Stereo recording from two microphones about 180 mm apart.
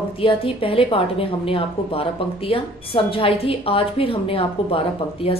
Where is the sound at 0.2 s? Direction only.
30° left (ahead or behind).